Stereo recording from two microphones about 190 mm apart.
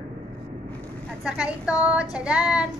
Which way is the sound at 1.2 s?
5° right (ahead or behind).